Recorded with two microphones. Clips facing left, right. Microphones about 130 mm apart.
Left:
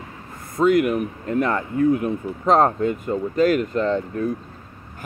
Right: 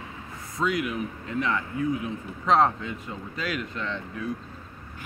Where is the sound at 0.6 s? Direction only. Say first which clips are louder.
Left 10 dB; 50° left (ahead or behind).